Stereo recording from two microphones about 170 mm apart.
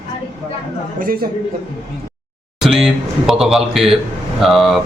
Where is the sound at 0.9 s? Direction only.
55° right (ahead or behind).